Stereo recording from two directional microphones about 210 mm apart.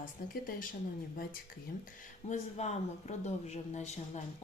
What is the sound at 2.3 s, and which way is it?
A woman's voice, 30° left (ahead or behind).